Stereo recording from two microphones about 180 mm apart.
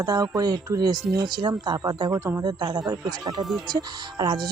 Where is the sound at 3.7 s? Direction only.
20° right (ahead or behind).